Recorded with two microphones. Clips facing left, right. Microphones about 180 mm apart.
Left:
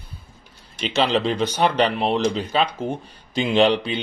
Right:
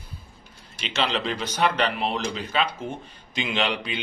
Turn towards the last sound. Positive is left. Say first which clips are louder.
# left 9 dB
turn(degrees=30)  # may be behind; listen again after turning